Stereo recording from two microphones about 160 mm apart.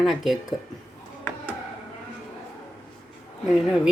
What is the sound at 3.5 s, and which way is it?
Speech, 5° right (ahead or behind).